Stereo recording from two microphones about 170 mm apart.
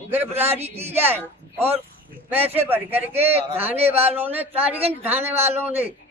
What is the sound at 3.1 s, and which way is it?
Speech, 35° right (ahead or behind).